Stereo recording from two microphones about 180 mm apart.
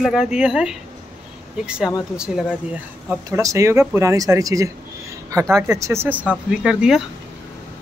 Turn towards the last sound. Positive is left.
turn(degrees=-5)  # may be behind; listen again after turning